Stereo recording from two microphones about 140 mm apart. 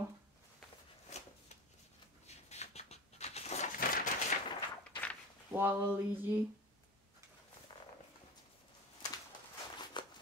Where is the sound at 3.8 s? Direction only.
90° left.